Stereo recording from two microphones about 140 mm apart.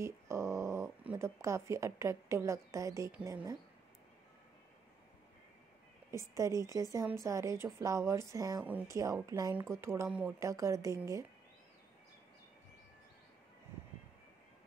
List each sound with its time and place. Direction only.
0.0 s dog: 20° right (ahead or behind)
1.1 s a woman's voice: 20° right (ahead or behind)
6.1 s a woman's voice: 20° right (ahead or behind)
10.0 s speech: 10° right (ahead or behind)
10.4 s a woman's voice: 20° right (ahead or behind)